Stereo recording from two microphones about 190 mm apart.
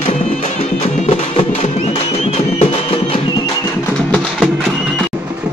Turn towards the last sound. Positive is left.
turn(degrees=0)  # may be behind; listen again after turning